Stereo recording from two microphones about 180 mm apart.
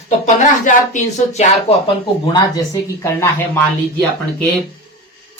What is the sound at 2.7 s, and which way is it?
Speech, 15° left (ahead or behind).